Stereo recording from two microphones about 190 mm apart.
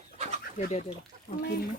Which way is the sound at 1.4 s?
50° left (ahead or behind).